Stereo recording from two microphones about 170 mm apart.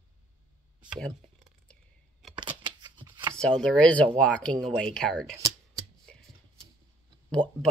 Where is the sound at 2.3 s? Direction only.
25° right (ahead or behind).